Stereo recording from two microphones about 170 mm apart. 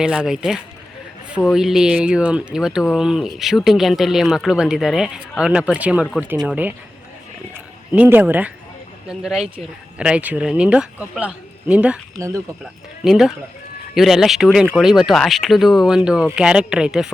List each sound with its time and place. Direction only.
0.0 s speech: 5° right (ahead or behind)
7.9 s speech: 10° right (ahead or behind)
12.1 s speech: 20° right (ahead or behind)
13.1 s speech: centre (ahead or behind)